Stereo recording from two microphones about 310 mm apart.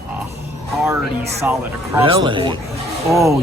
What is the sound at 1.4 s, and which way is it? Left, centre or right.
Speech, centre.